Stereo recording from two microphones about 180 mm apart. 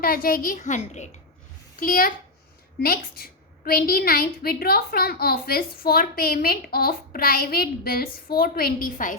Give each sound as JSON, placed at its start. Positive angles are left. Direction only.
{"t": 0.0, "sound": "a woman's voice", "side_deg": 55}